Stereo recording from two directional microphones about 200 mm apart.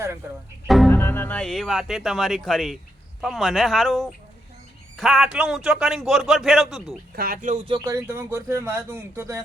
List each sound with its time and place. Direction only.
0.2 s speech: 10° right (ahead or behind)
0.7 s a man's voice: centre (ahead or behind)
0.9 s a man's voice: 10° left (ahead or behind)
7.2 s speech: 45° right (ahead or behind)
7.7 s speech: 15° right (ahead or behind)